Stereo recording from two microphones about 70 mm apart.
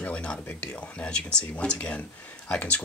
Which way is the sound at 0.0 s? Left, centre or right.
Centre.